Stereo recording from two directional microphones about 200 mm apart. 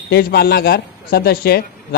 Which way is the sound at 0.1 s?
50° left (ahead or behind).